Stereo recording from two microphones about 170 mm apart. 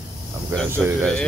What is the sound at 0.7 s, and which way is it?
Speech, 15° right (ahead or behind).